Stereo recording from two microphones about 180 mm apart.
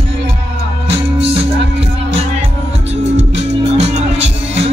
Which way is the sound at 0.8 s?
35° right (ahead or behind).